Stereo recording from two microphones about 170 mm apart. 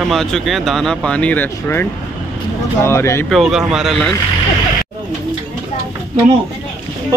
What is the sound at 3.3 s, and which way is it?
Speech, centre (ahead or behind).